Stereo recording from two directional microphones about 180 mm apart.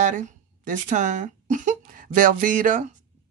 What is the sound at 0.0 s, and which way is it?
Speech, 45° right (ahead or behind).